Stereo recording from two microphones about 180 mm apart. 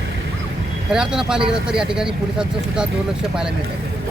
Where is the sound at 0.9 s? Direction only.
5° right (ahead or behind).